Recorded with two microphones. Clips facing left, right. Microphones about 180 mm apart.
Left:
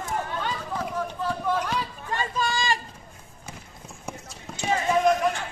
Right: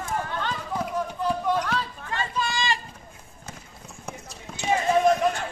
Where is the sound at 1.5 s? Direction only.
10° left (ahead or behind).